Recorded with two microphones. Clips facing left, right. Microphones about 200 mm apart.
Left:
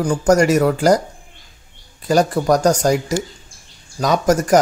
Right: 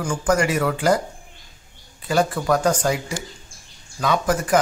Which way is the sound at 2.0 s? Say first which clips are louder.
Left 5 dB; 40° left (ahead or behind).